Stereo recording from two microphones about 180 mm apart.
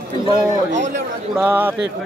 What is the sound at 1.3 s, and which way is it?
Speech, 10° right (ahead or behind).